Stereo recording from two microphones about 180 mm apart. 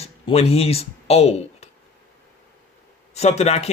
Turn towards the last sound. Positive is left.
turn(degrees=35)  # may be behind; listen again after turning